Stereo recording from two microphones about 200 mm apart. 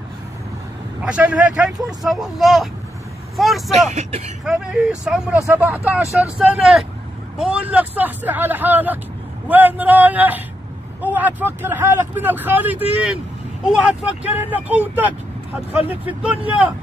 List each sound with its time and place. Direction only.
1.0 s speech: 5° right (ahead or behind)
3.9 s speech: 35° right (ahead or behind)
4.5 s speech: centre (ahead or behind)